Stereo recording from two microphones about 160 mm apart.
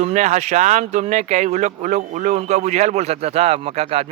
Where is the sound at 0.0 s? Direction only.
45° right (ahead or behind).